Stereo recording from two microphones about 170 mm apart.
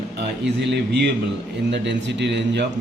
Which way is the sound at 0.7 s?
80° right.